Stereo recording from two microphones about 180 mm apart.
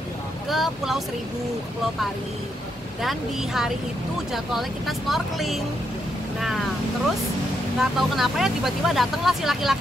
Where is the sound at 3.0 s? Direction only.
Centre (ahead or behind).